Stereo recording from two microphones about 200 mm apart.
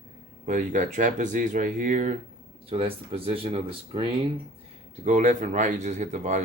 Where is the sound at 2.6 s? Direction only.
30° right (ahead or behind).